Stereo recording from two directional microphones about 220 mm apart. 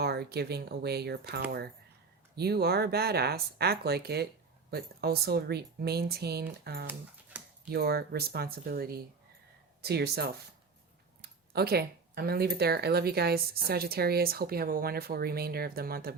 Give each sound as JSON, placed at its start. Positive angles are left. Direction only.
{"t": 0.0, "sound": "speech", "side_deg": -45}